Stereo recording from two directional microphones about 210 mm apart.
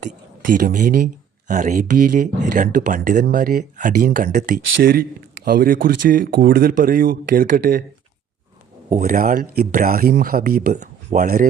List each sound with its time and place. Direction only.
0.0 s speech: 40° right (ahead or behind)
8.9 s speech: 40° right (ahead or behind)